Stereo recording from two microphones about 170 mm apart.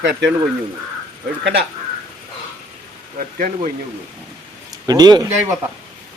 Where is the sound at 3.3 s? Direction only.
55° right (ahead or behind).